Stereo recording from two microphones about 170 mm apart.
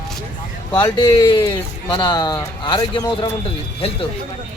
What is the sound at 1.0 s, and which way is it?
Speech, 30° left (ahead or behind).